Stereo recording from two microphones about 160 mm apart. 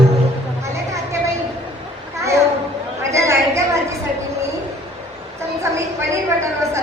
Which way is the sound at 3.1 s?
20° right (ahead or behind).